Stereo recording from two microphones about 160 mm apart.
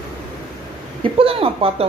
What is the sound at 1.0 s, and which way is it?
Speech, 35° right (ahead or behind).